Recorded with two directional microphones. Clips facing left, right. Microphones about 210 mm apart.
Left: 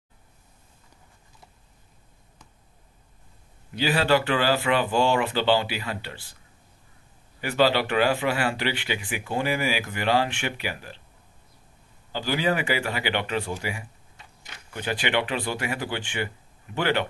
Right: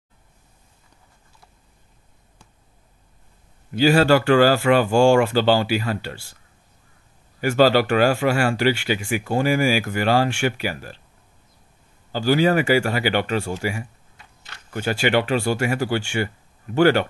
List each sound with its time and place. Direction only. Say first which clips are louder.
3.7 s speech: right 7 dB; 45° right (ahead or behind)
7.4 s speech: right 6 dB; 45° right (ahead or behind)
12.1 s speech: right 7 dB; 45° right (ahead or behind)